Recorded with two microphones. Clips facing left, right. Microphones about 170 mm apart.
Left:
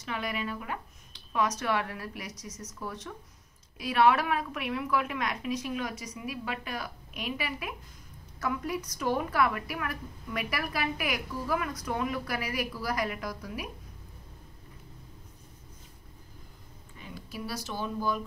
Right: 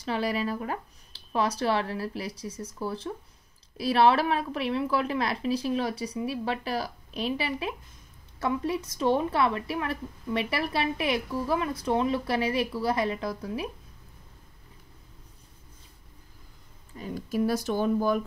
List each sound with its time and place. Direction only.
0.0 s a woman's voice: 35° right (ahead or behind)
16.9 s speech: 40° right (ahead or behind)